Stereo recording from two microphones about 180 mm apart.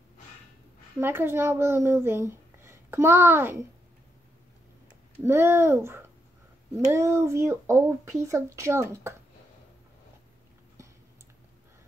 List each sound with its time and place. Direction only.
1.0 s speech: 15° right (ahead or behind)
5.2 s speech: 15° right (ahead or behind)